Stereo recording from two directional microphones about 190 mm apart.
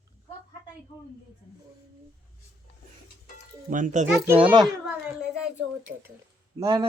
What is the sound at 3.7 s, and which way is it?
Speech, 40° right (ahead or behind).